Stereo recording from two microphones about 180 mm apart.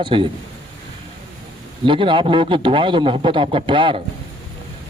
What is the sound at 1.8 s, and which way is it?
A man's voice, 30° right (ahead or behind).